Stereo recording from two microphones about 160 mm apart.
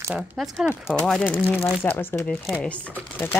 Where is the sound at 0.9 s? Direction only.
5° left (ahead or behind).